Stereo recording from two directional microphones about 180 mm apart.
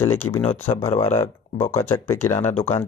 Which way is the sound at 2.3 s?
40° left (ahead or behind).